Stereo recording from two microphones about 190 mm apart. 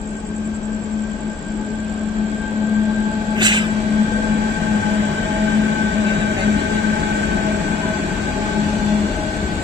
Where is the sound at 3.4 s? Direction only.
25° right (ahead or behind).